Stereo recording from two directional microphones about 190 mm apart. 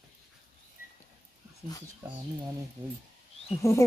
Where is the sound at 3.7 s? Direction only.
15° left (ahead or behind).